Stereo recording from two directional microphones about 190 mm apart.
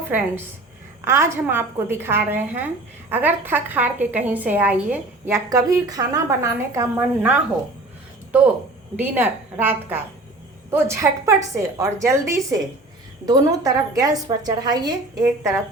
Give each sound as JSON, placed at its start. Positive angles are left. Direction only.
{"t": 1.0, "sound": "a woman's voice", "side_deg": -15}